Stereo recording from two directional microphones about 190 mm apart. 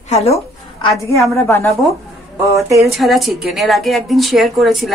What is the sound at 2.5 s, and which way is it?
Speech, 15° right (ahead or behind).